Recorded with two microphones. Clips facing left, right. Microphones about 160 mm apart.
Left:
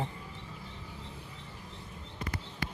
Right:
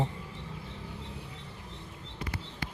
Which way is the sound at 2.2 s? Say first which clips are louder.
Even; 45° left (ahead or behind).